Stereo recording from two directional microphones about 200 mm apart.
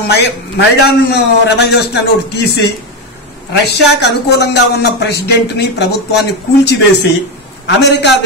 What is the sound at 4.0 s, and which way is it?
Speech, 55° left (ahead or behind).